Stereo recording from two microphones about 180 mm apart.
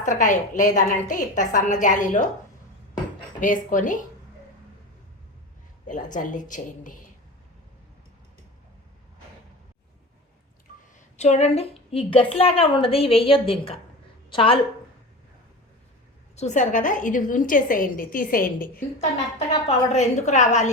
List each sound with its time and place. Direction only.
0.0 s a woman's voice: 45° left (ahead or behind)
3.4 s a woman's voice: 45° left (ahead or behind)
5.9 s a woman's voice: 45° left (ahead or behind)
11.2 s a woman's voice: 40° left (ahead or behind)
16.3 s a woman's voice: 40° left (ahead or behind)
19.6 s a woman's voice: 40° left (ahead or behind)